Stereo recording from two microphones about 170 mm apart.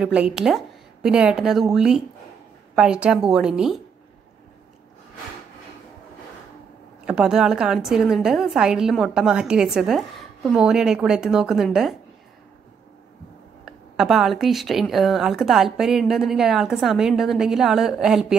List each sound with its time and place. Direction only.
0.0 s a woman's voice: 5° right (ahead or behind)
7.1 s a woman's voice: 5° right (ahead or behind)
13.7 s a woman's voice: centre (ahead or behind)